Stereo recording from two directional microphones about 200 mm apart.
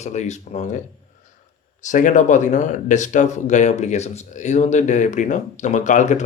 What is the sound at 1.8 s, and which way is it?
Speech, 40° left (ahead or behind).